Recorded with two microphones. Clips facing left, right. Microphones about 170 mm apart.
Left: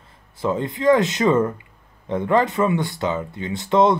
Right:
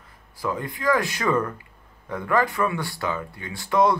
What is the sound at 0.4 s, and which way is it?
Speech, 25° left (ahead or behind).